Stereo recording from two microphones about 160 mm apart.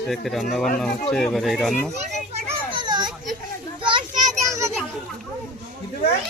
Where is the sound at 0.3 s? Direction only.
Centre (ahead or behind).